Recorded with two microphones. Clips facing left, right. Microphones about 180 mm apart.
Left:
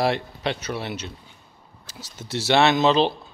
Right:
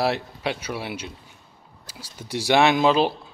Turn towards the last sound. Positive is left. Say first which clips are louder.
# even
turn(degrees=-10)  # may be behind; listen again after turning